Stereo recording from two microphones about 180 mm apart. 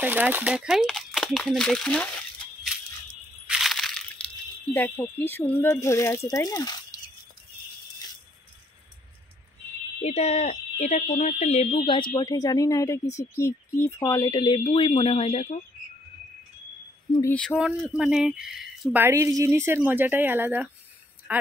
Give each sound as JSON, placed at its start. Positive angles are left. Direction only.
{"t": 0.0, "sound": "speech", "side_deg": -10}
{"t": 3.4, "sound": "crushing", "side_deg": 0}
{"t": 4.7, "sound": "speech", "side_deg": 10}
{"t": 10.0, "sound": "speech", "side_deg": 35}
{"t": 17.2, "sound": "speech", "side_deg": 5}
{"t": 17.6, "sound": "speech", "side_deg": -5}